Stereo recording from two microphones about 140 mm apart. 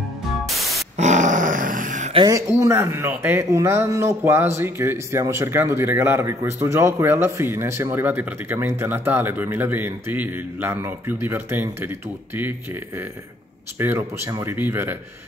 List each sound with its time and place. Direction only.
0.5 s music: centre (ahead or behind)
0.9 s dog: 60° right (ahead or behind)
2.2 s speech: 20° right (ahead or behind)